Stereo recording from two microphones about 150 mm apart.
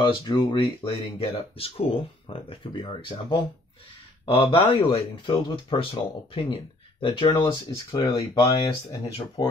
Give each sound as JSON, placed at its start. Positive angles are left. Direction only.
{"t": 0.0, "sound": "speech", "side_deg": 30}